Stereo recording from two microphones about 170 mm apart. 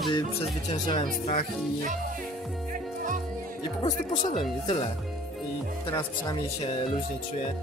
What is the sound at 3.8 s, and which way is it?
Speech, 30° left (ahead or behind).